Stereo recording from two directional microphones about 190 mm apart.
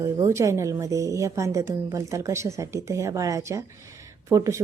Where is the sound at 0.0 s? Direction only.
15° right (ahead or behind).